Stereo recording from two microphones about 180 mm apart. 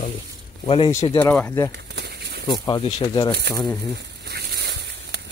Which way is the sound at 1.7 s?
65° right (ahead or behind).